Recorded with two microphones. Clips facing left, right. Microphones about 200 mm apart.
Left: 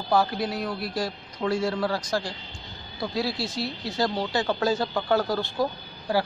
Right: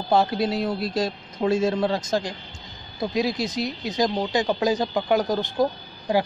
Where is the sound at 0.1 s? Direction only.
25° right (ahead or behind).